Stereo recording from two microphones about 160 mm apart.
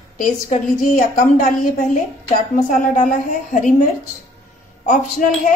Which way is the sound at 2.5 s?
55° left (ahead or behind).